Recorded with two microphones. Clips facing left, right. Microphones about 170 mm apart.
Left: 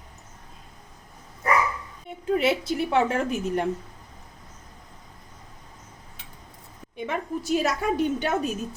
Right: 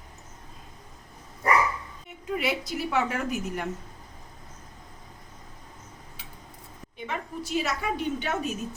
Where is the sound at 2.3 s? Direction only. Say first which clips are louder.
Left 6 dB; 25° left (ahead or behind).